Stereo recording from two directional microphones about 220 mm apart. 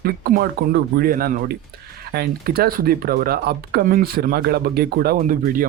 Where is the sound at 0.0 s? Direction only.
40° right (ahead or behind).